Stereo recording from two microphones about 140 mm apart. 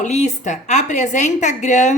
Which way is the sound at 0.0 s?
55° left (ahead or behind).